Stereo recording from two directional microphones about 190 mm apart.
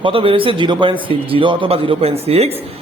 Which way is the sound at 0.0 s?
30° right (ahead or behind).